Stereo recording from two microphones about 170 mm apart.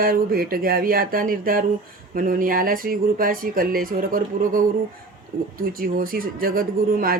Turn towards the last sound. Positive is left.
turn(degrees=-60)  # may be behind; listen again after turning